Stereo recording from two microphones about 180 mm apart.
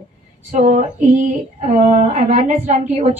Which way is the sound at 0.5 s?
45° right (ahead or behind).